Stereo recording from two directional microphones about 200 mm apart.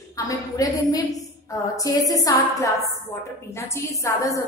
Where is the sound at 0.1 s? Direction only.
15° left (ahead or behind).